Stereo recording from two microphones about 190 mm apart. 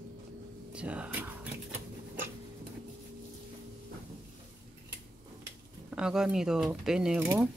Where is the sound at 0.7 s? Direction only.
5° right (ahead or behind).